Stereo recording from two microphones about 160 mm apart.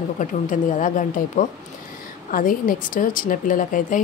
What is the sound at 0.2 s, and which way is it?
Speech, 50° left (ahead or behind).